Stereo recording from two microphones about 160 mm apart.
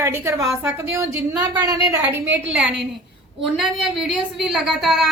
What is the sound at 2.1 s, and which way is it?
A woman's voice, 10° right (ahead or behind).